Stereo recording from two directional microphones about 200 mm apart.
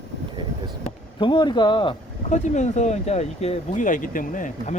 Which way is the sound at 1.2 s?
25° left (ahead or behind).